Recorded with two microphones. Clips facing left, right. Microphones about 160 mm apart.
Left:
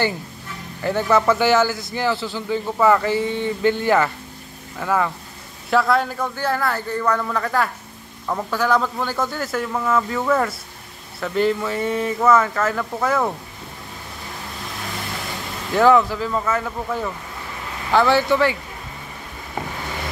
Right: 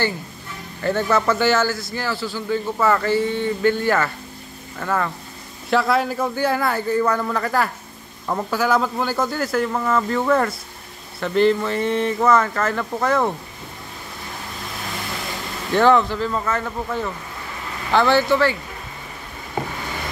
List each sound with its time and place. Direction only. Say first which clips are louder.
0.8 s a man's voice: left 1 dB; 10° left (ahead or behind)
5.7 s speech: left 1 dB; 5° right (ahead or behind)
6.1 s speech: right 2 dB; 15° right (ahead or behind); by 13.2 s 5° left (ahead or behind)
15.7 s a man's voice: left 1 dB; 5° left (ahead or behind)